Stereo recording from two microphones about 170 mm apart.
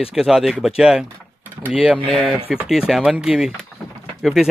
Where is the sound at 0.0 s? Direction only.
Centre (ahead or behind).